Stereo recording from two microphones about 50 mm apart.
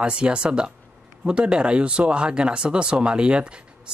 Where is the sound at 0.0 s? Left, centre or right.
Centre.